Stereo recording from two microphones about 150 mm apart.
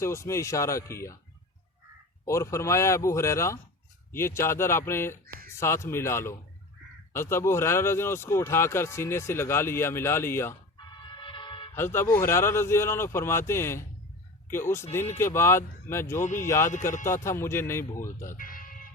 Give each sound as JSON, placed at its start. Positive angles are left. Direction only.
{"t": 0.0, "sound": "speech", "side_deg": 20}
{"t": 2.2, "sound": "speech", "side_deg": 20}
{"t": 11.2, "sound": "vehicle", "side_deg": 30}
{"t": 11.7, "sound": "speech", "side_deg": 15}
{"t": 18.3, "sound": "music", "side_deg": 65}